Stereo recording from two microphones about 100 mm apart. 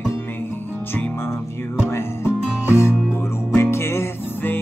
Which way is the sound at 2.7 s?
25° left (ahead or behind).